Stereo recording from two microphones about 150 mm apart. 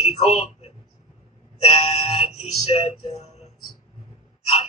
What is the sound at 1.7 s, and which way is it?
Music, 40° left (ahead or behind).